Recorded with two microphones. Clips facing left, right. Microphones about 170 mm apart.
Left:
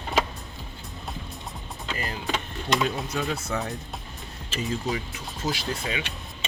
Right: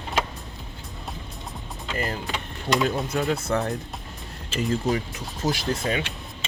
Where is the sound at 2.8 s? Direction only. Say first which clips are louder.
Right 4 dB; 50° right (ahead or behind).